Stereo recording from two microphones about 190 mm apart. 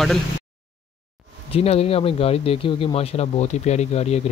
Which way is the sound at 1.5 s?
30° left (ahead or behind).